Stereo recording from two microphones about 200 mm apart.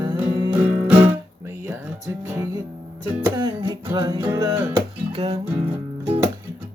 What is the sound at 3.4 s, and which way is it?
Music, 20° right (ahead or behind).